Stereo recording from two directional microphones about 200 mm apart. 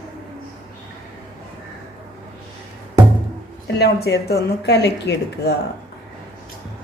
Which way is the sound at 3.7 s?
55° left (ahead or behind).